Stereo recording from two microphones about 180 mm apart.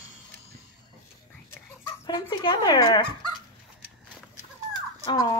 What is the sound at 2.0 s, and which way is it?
Speech, 25° left (ahead or behind).